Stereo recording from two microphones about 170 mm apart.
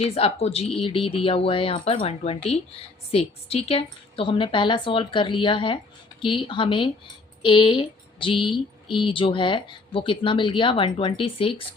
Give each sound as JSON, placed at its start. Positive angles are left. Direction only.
{"t": 0.0, "sound": "speech", "side_deg": 35}